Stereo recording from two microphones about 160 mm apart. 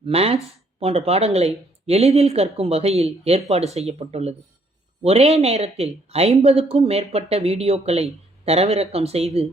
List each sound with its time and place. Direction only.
0.0 s speech: 40° right (ahead or behind)